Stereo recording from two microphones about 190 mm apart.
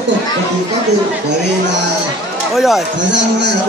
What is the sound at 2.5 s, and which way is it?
Speech, centre (ahead or behind).